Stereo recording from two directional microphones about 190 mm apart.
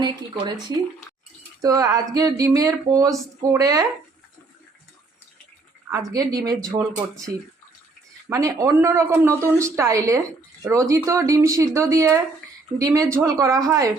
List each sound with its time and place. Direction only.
0.0 s speech: 20° right (ahead or behind)
1.6 s speech: 20° right (ahead or behind)
5.9 s speech: 20° right (ahead or behind)
8.3 s speech: 15° right (ahead or behind)